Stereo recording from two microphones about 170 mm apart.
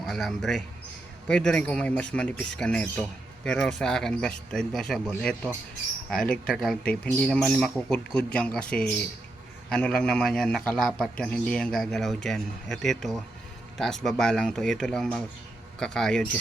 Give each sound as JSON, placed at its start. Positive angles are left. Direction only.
{"t": 0.0, "sound": "a man's voice", "side_deg": 0}